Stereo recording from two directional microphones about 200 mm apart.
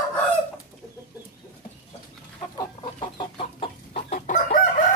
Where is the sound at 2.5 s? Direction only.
25° left (ahead or behind).